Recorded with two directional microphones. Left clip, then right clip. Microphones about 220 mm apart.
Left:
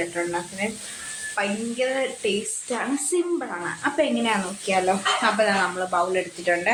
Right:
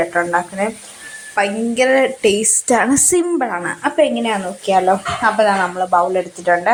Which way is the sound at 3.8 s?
15° right (ahead or behind).